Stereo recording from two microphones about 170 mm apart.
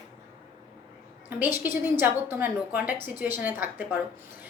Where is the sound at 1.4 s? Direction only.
10° right (ahead or behind).